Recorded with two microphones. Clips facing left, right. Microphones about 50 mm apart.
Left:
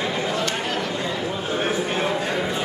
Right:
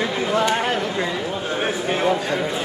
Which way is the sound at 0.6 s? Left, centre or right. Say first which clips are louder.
Right 4 dB; right.